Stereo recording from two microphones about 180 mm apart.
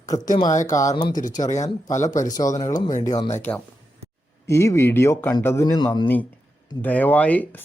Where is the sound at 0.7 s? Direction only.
20° left (ahead or behind).